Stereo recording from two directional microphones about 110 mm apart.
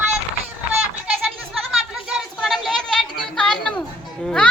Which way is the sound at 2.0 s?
5° right (ahead or behind).